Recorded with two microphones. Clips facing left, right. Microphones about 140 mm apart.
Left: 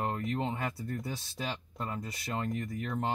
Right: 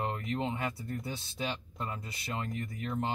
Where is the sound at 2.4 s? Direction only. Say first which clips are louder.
Left 4 dB; 40° left (ahead or behind).